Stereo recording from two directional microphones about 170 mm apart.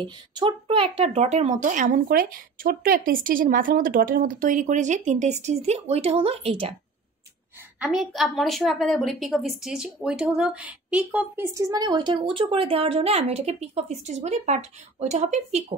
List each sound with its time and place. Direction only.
0.0 s speech: 30° right (ahead or behind)
7.8 s a woman's voice: centre (ahead or behind); by 15.6 s 40° right (ahead or behind)